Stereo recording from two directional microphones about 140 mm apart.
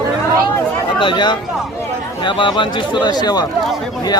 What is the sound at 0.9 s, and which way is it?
Speech, 35° left (ahead or behind).